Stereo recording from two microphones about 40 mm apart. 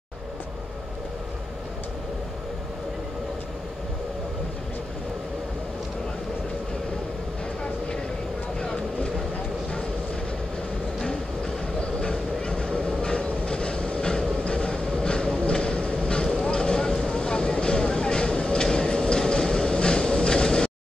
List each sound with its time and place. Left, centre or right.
8.5 s vehicle: left
11.1 s vehicle: left
12.9 s train: left
16.4 s vehicle: centre